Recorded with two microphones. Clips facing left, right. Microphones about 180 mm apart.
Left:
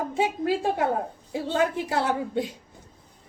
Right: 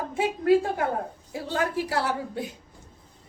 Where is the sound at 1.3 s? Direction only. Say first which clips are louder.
Left 4 dB; 20° left (ahead or behind).